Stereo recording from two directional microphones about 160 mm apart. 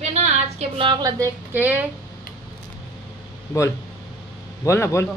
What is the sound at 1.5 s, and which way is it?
Speech, 10° right (ahead or behind).